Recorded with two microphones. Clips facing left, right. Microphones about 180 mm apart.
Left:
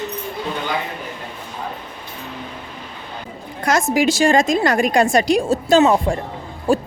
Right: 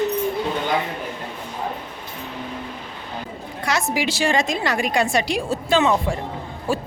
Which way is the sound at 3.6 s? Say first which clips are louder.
Left 6 dB; 45° left (ahead or behind).